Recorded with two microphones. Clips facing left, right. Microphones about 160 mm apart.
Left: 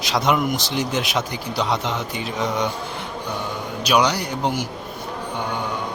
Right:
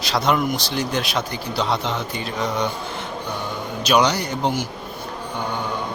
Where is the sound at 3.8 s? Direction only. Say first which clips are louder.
Right 1 dB; 10° left (ahead or behind).